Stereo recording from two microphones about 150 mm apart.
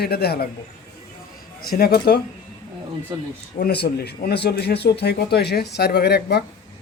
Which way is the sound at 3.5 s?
90° left.